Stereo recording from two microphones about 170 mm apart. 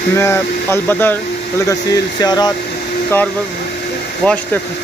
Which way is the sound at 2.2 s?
25° left (ahead or behind).